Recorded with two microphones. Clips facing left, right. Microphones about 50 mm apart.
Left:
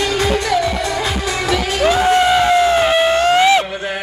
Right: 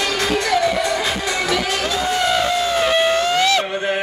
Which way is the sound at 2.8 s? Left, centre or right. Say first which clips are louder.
Left 3 dB; centre.